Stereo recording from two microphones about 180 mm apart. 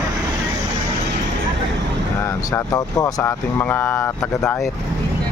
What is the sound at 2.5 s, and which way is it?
Speech, 20° left (ahead or behind).